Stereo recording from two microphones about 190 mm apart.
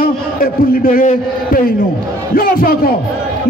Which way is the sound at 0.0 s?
50° left (ahead or behind).